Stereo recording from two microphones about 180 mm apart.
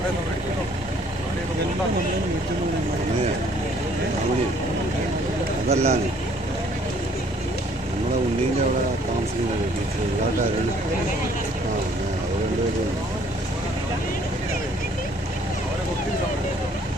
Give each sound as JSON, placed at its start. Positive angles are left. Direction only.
{"t": 5.7, "sound": "speech", "side_deg": -35}